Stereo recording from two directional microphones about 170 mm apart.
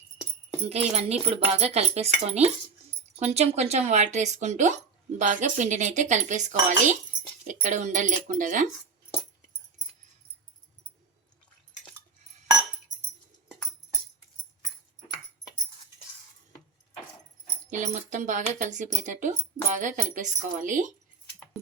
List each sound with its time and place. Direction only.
0.7 s speech: 40° right (ahead or behind)
17.7 s speech: 45° right (ahead or behind)